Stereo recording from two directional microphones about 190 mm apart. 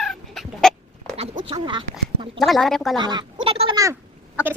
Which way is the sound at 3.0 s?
20° right (ahead or behind).